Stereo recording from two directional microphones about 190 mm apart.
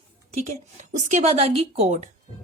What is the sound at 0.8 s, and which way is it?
A woman's voice, 40° right (ahead or behind).